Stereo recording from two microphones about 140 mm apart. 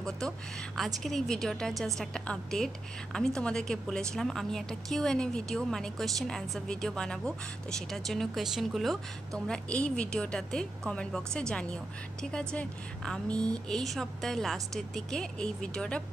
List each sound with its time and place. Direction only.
0.7 s a woman's voice: centre (ahead or behind)